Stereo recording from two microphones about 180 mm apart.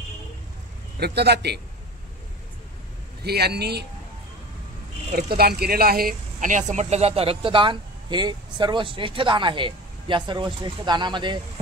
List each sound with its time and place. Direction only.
0.9 s a man's voice: 65° right (ahead or behind)
3.3 s a man's voice: 65° right (ahead or behind)
5.1 s speech: 60° right (ahead or behind); by 11.3 s 25° right (ahead or behind)